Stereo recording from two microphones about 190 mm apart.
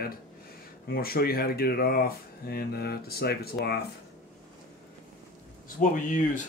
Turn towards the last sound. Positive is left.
turn(degrees=40)  # may be behind; listen again after turning